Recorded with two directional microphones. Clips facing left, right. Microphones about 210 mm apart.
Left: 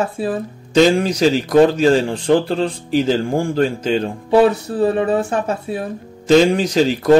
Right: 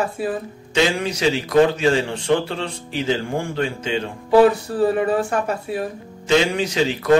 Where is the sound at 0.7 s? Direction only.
40° left (ahead or behind).